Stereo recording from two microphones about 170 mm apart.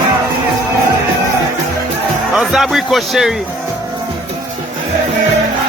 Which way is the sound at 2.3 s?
Centre (ahead or behind).